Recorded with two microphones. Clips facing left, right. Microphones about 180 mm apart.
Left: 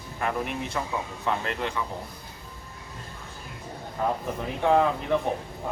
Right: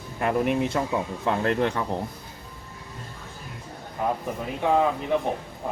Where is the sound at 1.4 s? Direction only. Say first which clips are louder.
Right 7 dB; 55° right (ahead or behind).